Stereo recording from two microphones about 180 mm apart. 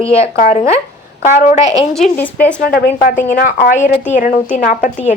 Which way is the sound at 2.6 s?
50° left (ahead or behind).